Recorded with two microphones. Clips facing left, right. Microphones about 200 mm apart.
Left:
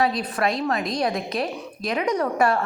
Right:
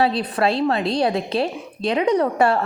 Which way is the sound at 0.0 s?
30° right (ahead or behind).